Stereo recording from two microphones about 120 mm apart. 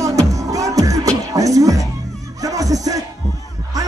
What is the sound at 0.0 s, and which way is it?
Music, 25° right (ahead or behind).